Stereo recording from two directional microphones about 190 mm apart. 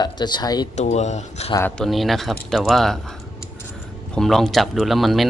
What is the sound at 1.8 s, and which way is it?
Speech, centre (ahead or behind).